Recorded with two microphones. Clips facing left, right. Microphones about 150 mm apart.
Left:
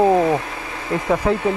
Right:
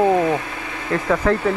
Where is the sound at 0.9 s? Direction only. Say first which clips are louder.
Even; 15° left (ahead or behind).